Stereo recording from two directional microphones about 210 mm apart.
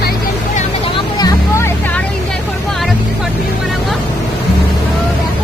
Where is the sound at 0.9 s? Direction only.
20° left (ahead or behind).